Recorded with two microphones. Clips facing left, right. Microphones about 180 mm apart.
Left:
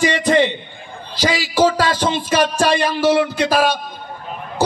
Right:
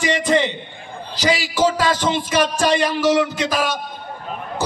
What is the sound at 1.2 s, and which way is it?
A man's voice, 35° left (ahead or behind).